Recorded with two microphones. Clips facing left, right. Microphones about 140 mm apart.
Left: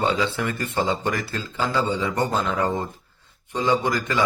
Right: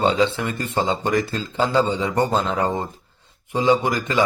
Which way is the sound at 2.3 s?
30° right (ahead or behind).